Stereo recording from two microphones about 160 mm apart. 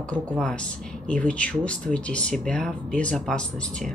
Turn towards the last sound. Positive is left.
turn(degrees=5)  # may be behind; listen again after turning